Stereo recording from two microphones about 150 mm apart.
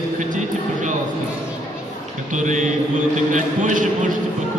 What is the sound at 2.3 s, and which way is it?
Speech, 55° right (ahead or behind).